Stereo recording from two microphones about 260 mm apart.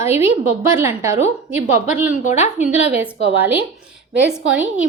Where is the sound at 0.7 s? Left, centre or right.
Centre.